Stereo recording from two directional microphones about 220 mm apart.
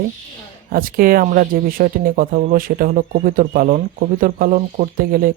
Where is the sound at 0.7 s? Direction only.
40° right (ahead or behind).